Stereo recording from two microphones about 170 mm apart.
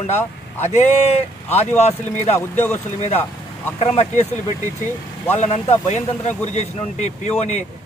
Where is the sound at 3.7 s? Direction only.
40° left (ahead or behind).